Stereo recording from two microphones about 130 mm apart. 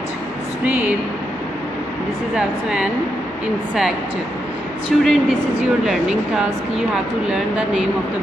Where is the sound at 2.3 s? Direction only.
5° right (ahead or behind).